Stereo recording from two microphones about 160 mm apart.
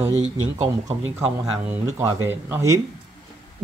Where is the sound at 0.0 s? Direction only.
45° right (ahead or behind).